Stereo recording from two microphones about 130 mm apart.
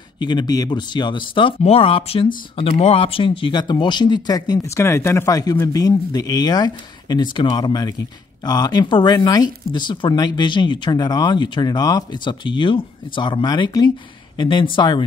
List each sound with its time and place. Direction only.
0.2 s speech: 35° left (ahead or behind)